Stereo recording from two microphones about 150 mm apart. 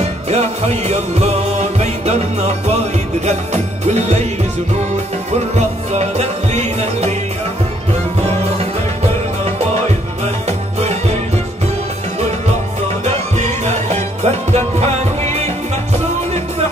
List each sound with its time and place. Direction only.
0.0 s music: 45° right (ahead or behind)
5.9 s music: 50° right (ahead or behind)
13.0 s music: 50° right (ahead or behind)